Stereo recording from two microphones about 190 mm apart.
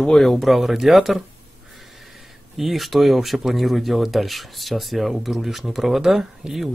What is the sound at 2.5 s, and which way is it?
Speech, centre (ahead or behind).